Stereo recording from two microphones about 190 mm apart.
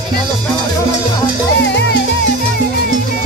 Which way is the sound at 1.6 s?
65° left (ahead or behind).